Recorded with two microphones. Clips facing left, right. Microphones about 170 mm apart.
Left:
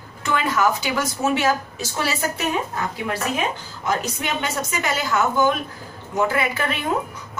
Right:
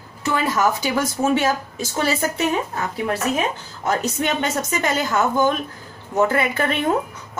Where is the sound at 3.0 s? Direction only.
40° right (ahead or behind).